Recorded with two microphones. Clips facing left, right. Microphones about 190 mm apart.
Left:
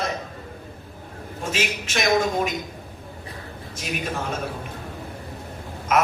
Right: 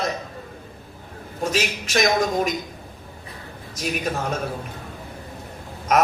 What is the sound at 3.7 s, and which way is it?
Speech, 40° right (ahead or behind).